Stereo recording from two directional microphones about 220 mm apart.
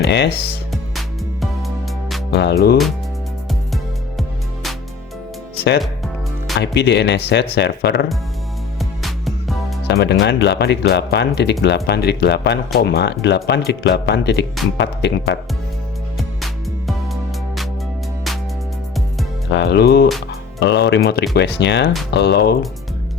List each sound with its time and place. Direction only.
0.0 s speech: 50° left (ahead or behind)
0.7 s music: centre (ahead or behind)
2.3 s speech: 50° left (ahead or behind)
6.6 s speech: 50° left (ahead or behind)
8.8 s music: centre (ahead or behind)
9.9 s speech: 50° left (ahead or behind)
19.5 s speech: 50° left (ahead or behind)